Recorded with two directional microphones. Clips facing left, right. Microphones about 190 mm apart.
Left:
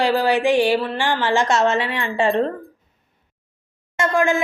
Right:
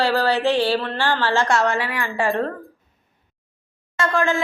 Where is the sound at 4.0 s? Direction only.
20° left (ahead or behind).